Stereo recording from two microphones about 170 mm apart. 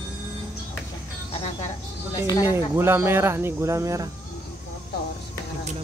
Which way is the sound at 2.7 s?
15° right (ahead or behind).